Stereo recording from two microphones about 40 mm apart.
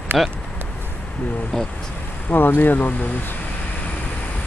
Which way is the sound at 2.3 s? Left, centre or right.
Left.